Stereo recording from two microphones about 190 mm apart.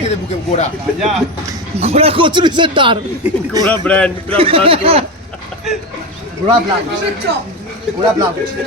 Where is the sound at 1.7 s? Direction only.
30° right (ahead or behind).